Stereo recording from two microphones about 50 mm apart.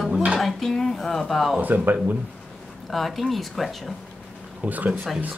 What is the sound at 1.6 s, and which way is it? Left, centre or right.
Speech, right.